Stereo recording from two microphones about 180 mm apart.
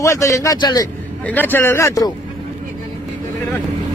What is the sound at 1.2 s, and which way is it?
Speech, 10° left (ahead or behind).